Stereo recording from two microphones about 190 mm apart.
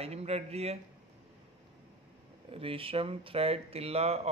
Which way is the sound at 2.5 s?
30° right (ahead or behind).